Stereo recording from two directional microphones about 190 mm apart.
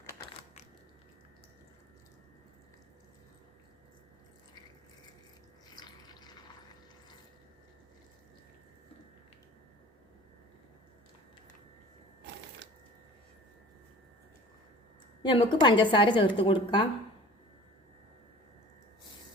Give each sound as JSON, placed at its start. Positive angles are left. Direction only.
{"t": 0.0, "sound": "a sound", "side_deg": 15}
{"t": 5.7, "sound": "water", "side_deg": 20}
{"t": 15.2, "sound": "a woman's voice", "side_deg": 25}